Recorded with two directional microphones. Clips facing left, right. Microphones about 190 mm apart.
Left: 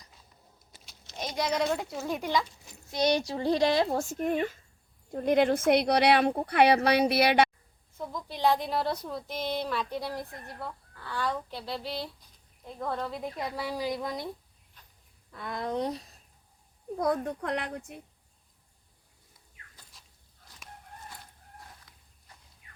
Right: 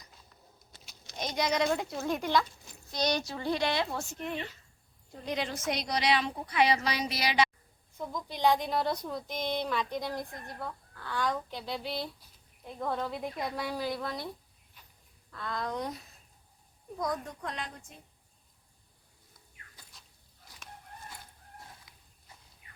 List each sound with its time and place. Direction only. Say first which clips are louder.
1.1 s speech: even; 5° left (ahead or behind)
2.9 s a woman's voice: left 5 dB; 25° left (ahead or behind); by 7.5 s 60° left (ahead or behind)
7.9 s speech: left 1 dB; centre (ahead or behind)
15.3 s speech: left 2 dB; 20° left (ahead or behind)
17.0 s a woman's voice: left 6 dB; 60° left (ahead or behind)